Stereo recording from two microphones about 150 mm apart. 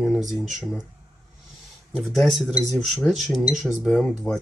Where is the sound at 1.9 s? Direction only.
5° right (ahead or behind).